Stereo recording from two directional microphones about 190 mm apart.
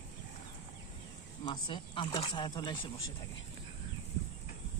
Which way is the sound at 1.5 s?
25° left (ahead or behind).